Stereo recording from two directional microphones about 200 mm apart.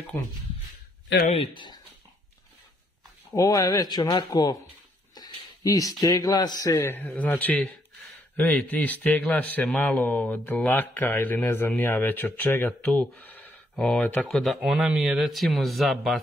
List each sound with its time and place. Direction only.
1.2 s speech: 30° left (ahead or behind)
3.3 s speech: 15° left (ahead or behind)
5.1 s a sound: 20° left (ahead or behind)
6.6 s speech: 15° left (ahead or behind)